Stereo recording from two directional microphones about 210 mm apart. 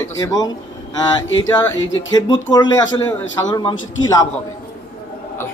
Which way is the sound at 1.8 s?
65° left (ahead or behind).